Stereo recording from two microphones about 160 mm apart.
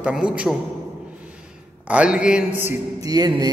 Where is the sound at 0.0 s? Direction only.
5° right (ahead or behind).